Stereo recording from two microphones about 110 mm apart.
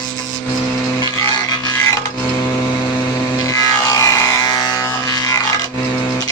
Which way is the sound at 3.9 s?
30° left (ahead or behind).